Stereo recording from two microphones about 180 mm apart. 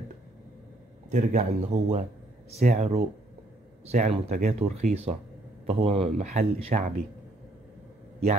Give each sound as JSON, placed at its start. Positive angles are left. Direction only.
{"t": 1.1, "sound": "speech", "side_deg": -40}